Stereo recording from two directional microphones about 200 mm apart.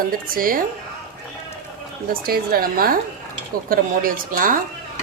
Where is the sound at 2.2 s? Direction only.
45° right (ahead or behind).